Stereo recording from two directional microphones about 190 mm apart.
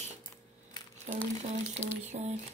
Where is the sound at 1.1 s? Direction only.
35° right (ahead or behind).